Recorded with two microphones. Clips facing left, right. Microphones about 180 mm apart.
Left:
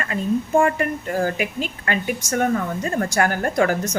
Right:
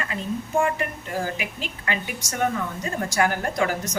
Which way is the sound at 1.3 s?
50° left (ahead or behind).